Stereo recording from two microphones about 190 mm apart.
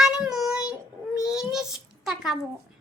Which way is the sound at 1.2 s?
5° right (ahead or behind).